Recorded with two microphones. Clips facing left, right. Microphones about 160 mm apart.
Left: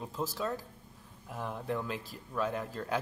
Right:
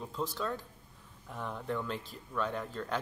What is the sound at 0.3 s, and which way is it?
Speech, 40° left (ahead or behind).